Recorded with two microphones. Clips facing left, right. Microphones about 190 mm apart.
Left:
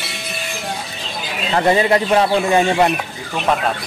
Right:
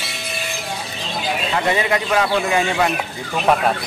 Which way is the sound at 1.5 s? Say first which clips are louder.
Left 6 dB; 35° left (ahead or behind).